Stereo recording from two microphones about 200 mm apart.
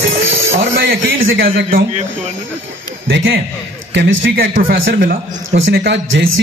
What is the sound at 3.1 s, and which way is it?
Speech, 60° right (ahead or behind).